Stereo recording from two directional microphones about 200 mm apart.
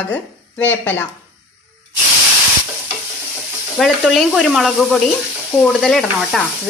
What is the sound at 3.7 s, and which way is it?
A woman's voice, centre (ahead or behind).